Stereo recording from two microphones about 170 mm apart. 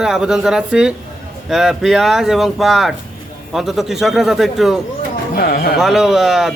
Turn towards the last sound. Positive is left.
turn(degrees=0)  # may be behind; listen again after turning